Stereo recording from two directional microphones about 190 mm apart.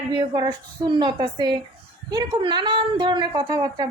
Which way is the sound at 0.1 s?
25° right (ahead or behind).